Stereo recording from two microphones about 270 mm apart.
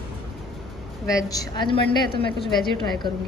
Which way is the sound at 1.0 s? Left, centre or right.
Centre.